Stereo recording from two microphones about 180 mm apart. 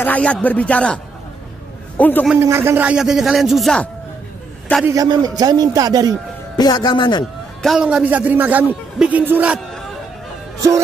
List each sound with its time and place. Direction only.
0.0 s a man's voice: 10° left (ahead or behind)
2.4 s speech: 15° right (ahead or behind); by 3.9 s centre (ahead or behind)
4.8 s speech: 20° right (ahead or behind)
6.5 s a man's voice: 25° left (ahead or behind)
7.6 s a man's voice: 5° right (ahead or behind)